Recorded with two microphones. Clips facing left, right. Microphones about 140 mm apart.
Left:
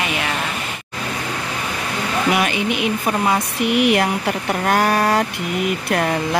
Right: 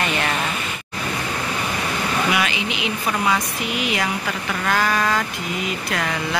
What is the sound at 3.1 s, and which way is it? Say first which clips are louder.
Speech: left 1 dB; 30° left (ahead or behind).